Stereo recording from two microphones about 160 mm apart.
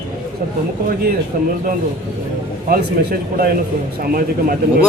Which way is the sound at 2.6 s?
65° right (ahead or behind).